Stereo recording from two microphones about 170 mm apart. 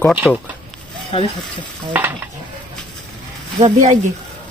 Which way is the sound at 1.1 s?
35° left (ahead or behind).